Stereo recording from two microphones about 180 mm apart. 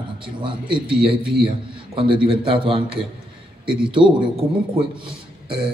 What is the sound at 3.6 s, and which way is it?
Speech, 5° right (ahead or behind).